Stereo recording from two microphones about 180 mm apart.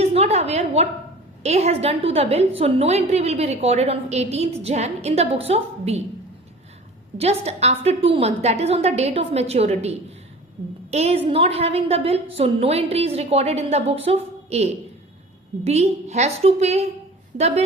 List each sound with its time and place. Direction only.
0.0 s a sound: 35° right (ahead or behind)
1.4 s a woman's voice: 35° right (ahead or behind)
7.2 s a woman's voice: 35° right (ahead or behind)
10.9 s a woman's voice: 35° right (ahead or behind)